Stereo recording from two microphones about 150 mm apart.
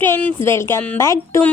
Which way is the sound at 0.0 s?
10° left (ahead or behind).